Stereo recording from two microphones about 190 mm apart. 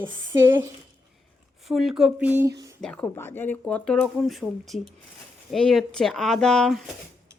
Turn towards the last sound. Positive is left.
turn(degrees=5)  # may be behind; listen again after turning